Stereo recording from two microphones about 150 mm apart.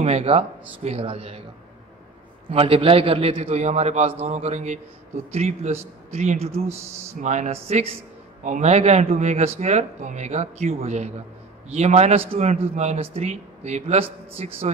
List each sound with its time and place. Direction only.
0.0 s a man's voice: 45° right (ahead or behind)
2.5 s a man's voice: 40° right (ahead or behind)